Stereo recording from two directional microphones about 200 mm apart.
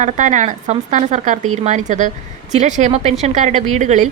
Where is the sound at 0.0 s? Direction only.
40° right (ahead or behind).